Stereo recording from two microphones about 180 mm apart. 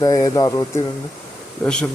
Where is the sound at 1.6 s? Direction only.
5° left (ahead or behind).